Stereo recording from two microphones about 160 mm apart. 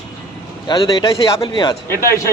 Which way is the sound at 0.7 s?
25° left (ahead or behind).